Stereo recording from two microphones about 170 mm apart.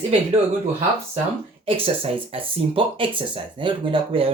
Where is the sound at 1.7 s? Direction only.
35° right (ahead or behind).